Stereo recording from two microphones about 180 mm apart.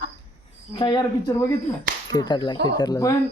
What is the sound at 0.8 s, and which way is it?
Speech, 30° left (ahead or behind).